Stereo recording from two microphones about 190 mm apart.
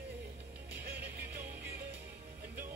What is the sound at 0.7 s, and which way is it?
Music, 10° right (ahead or behind).